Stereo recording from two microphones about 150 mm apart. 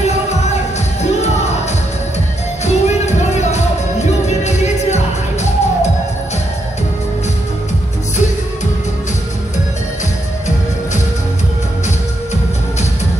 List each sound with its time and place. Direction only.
2.6 s music: 50° left (ahead or behind)